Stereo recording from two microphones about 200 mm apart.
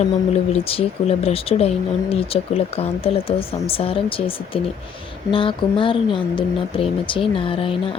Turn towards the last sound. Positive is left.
turn(degrees=25)  # may be behind; listen again after turning